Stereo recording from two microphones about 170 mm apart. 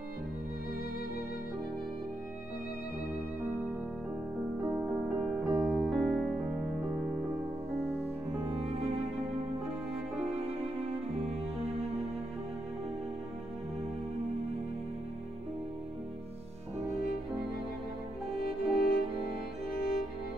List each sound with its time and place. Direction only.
4.6 s music: 5° right (ahead or behind)
18.3 s music: 60° left (ahead or behind)